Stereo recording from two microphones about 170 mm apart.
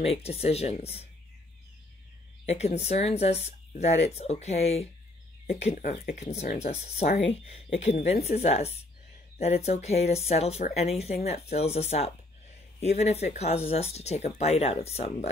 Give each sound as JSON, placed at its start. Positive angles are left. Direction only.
{"t": 0.0, "sound": "speech", "side_deg": 35}
{"t": 2.4, "sound": "speech", "side_deg": 40}